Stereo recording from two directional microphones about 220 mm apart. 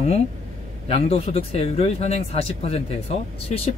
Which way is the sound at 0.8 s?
25° left (ahead or behind).